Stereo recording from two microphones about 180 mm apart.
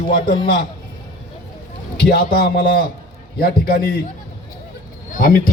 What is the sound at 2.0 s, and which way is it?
A man's voice, 60° left (ahead or behind).